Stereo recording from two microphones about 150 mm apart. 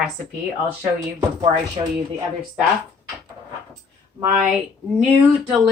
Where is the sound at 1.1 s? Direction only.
35° right (ahead or behind).